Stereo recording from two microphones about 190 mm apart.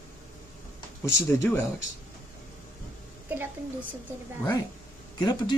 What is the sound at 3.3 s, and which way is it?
Speech, 10° right (ahead or behind).